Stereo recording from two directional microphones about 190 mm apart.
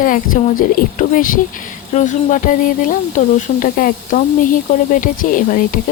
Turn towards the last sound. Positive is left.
turn(degrees=45)  # may be behind; listen again after turning